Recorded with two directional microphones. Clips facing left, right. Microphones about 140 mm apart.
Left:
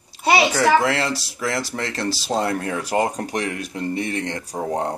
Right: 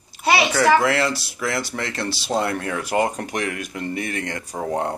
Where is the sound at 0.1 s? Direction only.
30° left (ahead or behind).